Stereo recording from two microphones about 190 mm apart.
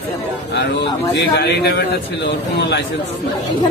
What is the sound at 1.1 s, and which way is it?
A man's voice, 60° left (ahead or behind).